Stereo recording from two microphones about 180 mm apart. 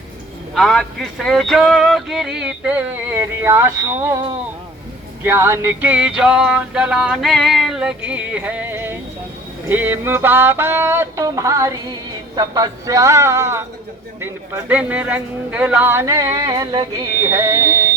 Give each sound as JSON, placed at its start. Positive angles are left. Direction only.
{"t": 0.5, "sound": "speech", "side_deg": 0}
{"t": 5.2, "sound": "male singing", "side_deg": -15}